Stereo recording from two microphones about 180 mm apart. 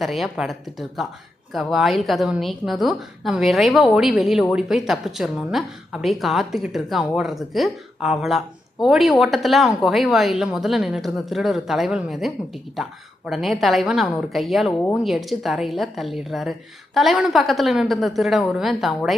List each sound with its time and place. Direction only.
0.0 s a woman's voice: centre (ahead or behind)